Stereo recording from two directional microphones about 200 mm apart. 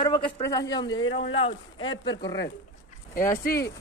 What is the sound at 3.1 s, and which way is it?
Speech, 45° left (ahead or behind).